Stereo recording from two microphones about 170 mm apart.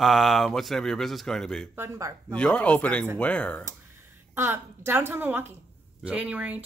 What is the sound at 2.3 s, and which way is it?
Speech, 5° left (ahead or behind).